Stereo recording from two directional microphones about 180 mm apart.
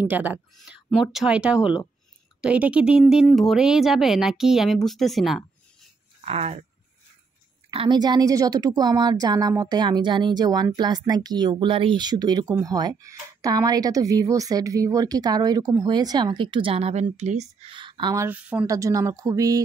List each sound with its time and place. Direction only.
0.0 s speech: 10° right (ahead or behind)
6.2 s speech: 35° right (ahead or behind)
7.7 s speech: 25° right (ahead or behind)
18.2 s speech: 10° right (ahead or behind)